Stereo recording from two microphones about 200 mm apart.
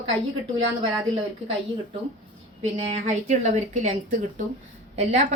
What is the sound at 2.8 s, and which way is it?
A woman's voice, 35° right (ahead or behind).